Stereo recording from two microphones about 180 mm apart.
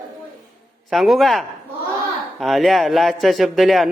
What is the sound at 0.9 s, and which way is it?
A man's voice, centre (ahead or behind).